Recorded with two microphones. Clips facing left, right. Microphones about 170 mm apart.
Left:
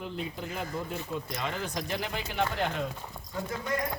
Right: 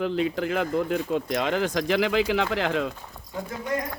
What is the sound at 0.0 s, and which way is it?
Speech, 90° right.